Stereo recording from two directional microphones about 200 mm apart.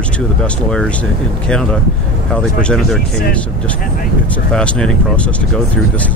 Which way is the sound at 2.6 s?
5° left (ahead or behind).